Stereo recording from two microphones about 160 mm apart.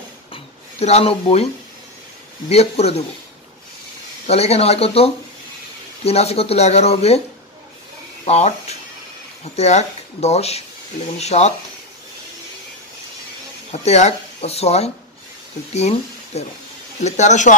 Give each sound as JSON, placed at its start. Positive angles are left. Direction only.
{"t": 0.3, "sound": "a sound", "side_deg": 40}
{"t": 2.5, "sound": "speech", "side_deg": 40}
{"t": 4.3, "sound": "speech", "side_deg": 40}
{"t": 8.3, "sound": "speech", "side_deg": 45}
{"t": 13.7, "sound": "speech", "side_deg": 45}